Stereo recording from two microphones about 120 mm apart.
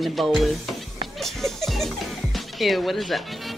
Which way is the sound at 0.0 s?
Centre (ahead or behind).